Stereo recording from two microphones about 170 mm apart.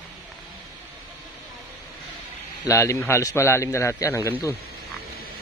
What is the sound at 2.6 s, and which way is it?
A man's voice, 15° left (ahead or behind).